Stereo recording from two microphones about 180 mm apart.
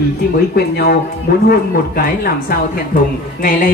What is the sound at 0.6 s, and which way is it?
Speech, 60° left (ahead or behind).